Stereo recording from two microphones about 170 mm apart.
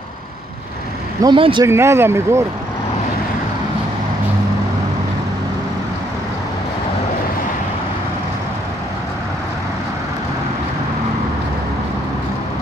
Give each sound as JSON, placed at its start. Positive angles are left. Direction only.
{"t": 1.2, "sound": "speech", "side_deg": -30}
{"t": 1.7, "sound": "speech", "side_deg": -15}